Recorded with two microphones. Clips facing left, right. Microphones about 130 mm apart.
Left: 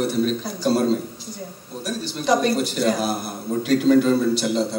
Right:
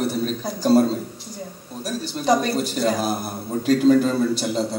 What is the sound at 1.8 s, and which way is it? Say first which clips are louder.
Speech: even; 40° right (ahead or behind).